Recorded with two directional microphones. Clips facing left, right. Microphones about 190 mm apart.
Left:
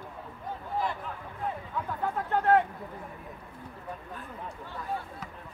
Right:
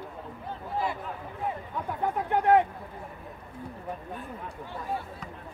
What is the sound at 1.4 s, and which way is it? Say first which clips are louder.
Speech: right 1 dB; 15° right (ahead or behind).